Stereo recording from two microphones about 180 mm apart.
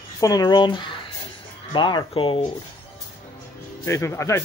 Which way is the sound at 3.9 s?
15° left (ahead or behind).